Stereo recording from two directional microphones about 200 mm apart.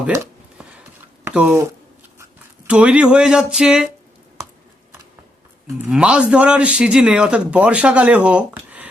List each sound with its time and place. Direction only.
1.2 s speech: 5° right (ahead or behind)
2.6 s a man's voice: 5° right (ahead or behind)
5.9 s a man's voice: 5° right (ahead or behind)